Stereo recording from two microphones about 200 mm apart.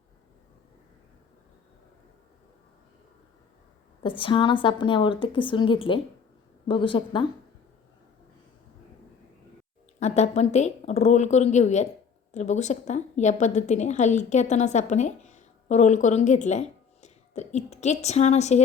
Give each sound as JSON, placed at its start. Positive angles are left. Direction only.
{"t": 4.0, "sound": "a woman's voice", "side_deg": 25}
{"t": 10.0, "sound": "a woman's voice", "side_deg": 35}